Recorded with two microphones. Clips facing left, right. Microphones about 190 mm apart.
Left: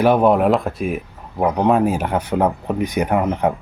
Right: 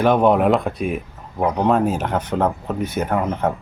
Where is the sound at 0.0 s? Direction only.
5° left (ahead or behind).